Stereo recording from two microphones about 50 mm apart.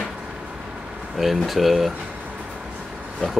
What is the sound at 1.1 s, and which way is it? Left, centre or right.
Speech, centre.